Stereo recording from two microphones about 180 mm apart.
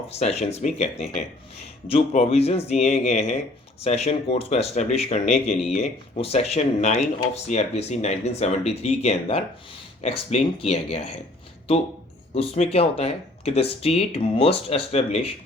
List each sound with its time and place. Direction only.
0.1 s speech: 35° left (ahead or behind)
12.3 s speech: 35° left (ahead or behind)